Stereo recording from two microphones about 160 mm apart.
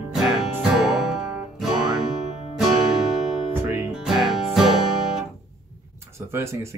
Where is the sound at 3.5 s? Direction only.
15° right (ahead or behind).